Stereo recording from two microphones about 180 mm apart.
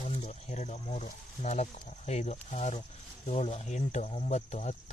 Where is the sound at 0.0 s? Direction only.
40° left (ahead or behind).